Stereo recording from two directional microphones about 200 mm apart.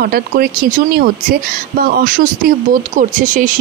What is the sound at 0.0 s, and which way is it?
Speech, 50° right (ahead or behind).